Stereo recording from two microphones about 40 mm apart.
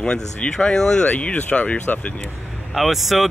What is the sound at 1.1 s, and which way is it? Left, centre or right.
Speech, left.